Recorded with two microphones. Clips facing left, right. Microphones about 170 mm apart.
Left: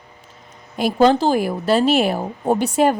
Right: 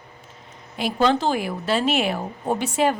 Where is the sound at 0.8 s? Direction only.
40° left (ahead or behind).